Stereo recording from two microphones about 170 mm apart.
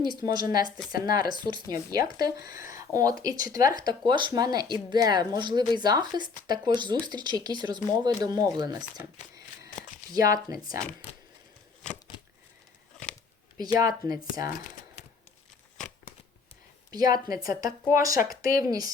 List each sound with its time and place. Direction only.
0.2 s speech: 25° right (ahead or behind)
10.1 s speech: 20° right (ahead or behind)
13.7 s speech: 20° right (ahead or behind)
16.9 s speech: 20° right (ahead or behind)